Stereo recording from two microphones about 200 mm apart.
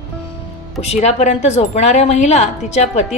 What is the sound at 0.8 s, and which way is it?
A woman's voice, 35° left (ahead or behind).